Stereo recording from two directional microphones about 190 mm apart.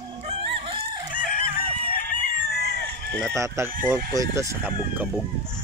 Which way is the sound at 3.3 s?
15° right (ahead or behind).